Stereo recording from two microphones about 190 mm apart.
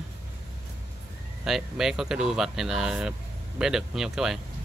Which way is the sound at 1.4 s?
Centre (ahead or behind).